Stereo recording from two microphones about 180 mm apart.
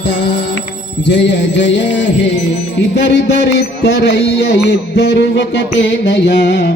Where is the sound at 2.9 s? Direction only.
70° left (ahead or behind).